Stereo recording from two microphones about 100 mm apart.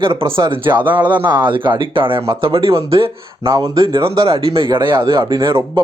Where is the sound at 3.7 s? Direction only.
60° right (ahead or behind).